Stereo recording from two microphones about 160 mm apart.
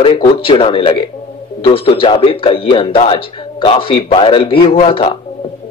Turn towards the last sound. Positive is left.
turn(degrees=35)  # may be behind; listen again after turning